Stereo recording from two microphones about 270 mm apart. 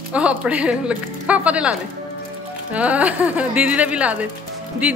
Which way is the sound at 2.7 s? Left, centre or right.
Centre.